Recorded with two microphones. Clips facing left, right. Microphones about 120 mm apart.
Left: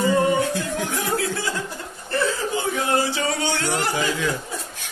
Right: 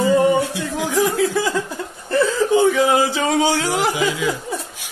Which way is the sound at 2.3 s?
85° right.